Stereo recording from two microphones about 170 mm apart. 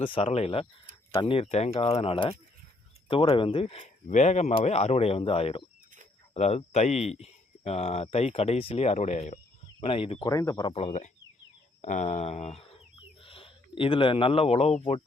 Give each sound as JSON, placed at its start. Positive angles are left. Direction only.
{"t": 0.0, "sound": "speech", "side_deg": 30}
{"t": 10.2, "sound": "speech", "side_deg": 20}
{"t": 10.7, "sound": "speech", "side_deg": 40}